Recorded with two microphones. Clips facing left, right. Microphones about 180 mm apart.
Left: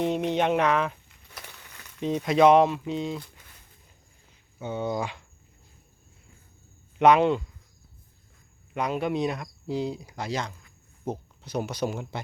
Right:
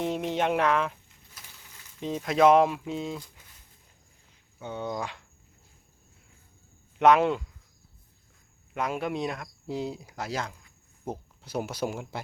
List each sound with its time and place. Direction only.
0.0 s speech: centre (ahead or behind)
1.0 s a sound: 70° left (ahead or behind)
2.2 s speech: centre (ahead or behind)
4.6 s speech: 5° left (ahead or behind)
7.0 s speech: centre (ahead or behind)
8.7 s speech: centre (ahead or behind)